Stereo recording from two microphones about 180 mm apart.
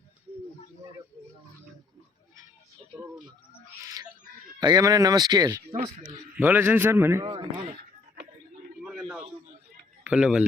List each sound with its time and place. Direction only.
4.6 s speech: 20° right (ahead or behind)
6.3 s a man's voice: 10° right (ahead or behind)
8.8 s a sound: 5° right (ahead or behind)
10.0 s speech: 5° right (ahead or behind)